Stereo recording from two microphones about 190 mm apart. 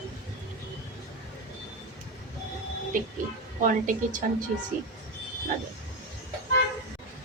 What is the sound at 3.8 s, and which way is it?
Speech, 40° right (ahead or behind).